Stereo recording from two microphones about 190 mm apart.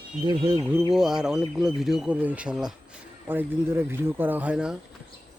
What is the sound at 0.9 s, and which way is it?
Speech, centre (ahead or behind).